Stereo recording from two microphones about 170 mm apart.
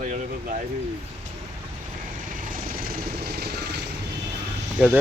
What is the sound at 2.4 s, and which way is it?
Vehicle, 55° right (ahead or behind).